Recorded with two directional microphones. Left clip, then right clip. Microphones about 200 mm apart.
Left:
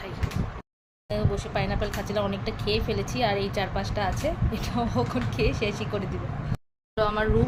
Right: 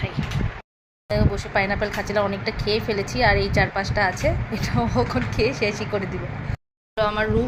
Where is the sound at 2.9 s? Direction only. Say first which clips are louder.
Right 6 dB; 10° right (ahead or behind).